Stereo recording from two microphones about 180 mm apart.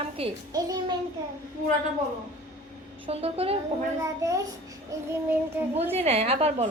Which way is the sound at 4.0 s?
20° right (ahead or behind).